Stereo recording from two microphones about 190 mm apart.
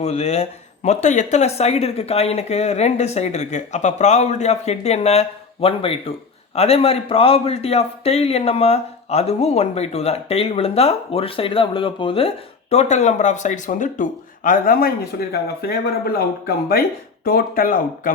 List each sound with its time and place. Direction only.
0.0 s speech: 35° left (ahead or behind)